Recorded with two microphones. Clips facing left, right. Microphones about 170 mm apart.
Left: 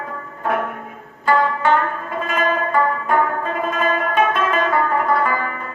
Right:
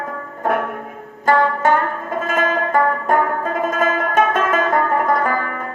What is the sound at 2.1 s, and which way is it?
Music, 45° right (ahead or behind).